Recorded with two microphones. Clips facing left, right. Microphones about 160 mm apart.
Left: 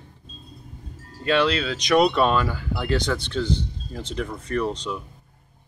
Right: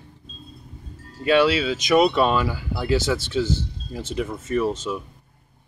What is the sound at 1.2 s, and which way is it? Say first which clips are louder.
Speech: right 3 dB; 5° right (ahead or behind).